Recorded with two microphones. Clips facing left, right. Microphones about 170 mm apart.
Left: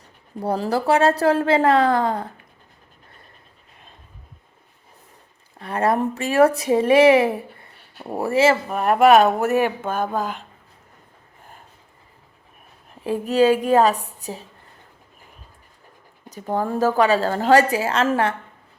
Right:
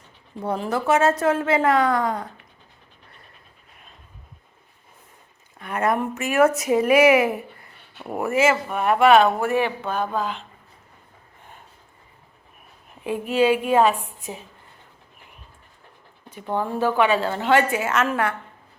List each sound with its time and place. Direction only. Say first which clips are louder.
0.4 s speech: left 2 dB; 35° left (ahead or behind)
5.5 s speech: left 2 dB; 30° left (ahead or behind)
13.1 s speech: left 3 dB; 40° left (ahead or behind)
16.3 s speech: left 2 dB; 40° left (ahead or behind)